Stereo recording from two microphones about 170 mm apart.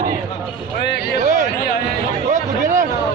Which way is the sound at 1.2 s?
50° right (ahead or behind).